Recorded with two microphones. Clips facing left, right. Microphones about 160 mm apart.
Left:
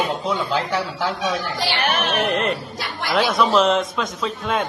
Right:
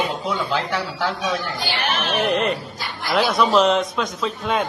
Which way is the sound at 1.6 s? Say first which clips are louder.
Left 3 dB; 70° left (ahead or behind).